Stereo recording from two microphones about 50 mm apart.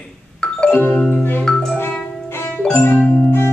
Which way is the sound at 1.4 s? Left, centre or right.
Centre.